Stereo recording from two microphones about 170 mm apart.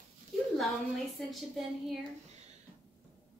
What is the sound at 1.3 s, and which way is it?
Speech, centre (ahead or behind).